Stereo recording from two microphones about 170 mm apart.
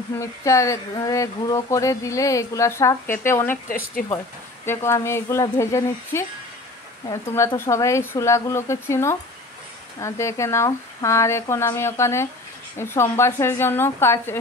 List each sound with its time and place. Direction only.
0.2 s speech: 15° left (ahead or behind)
3.6 s speech: 55° left (ahead or behind)
4.6 s speech: 15° left (ahead or behind)